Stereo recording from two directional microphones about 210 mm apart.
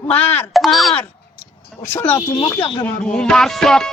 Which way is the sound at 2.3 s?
20° left (ahead or behind).